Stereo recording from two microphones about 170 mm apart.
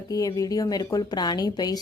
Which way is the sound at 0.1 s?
20° left (ahead or behind).